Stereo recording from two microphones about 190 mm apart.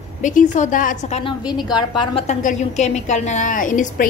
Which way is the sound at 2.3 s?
40° left (ahead or behind).